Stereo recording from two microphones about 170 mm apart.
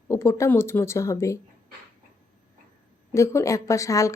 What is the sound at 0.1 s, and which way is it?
A woman's voice, 15° left (ahead or behind).